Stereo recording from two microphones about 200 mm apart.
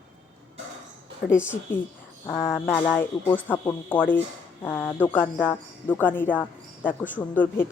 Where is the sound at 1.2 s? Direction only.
45° left (ahead or behind).